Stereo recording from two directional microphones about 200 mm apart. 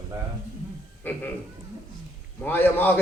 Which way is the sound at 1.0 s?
10° left (ahead or behind).